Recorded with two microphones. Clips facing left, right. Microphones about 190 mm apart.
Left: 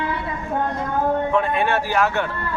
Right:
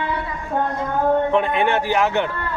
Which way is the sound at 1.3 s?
20° right (ahead or behind).